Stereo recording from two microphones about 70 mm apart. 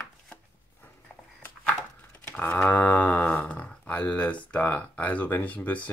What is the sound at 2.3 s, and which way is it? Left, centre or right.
Speech, left.